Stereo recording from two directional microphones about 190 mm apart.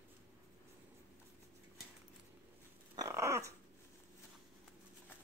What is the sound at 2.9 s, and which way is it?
Dog, 15° right (ahead or behind).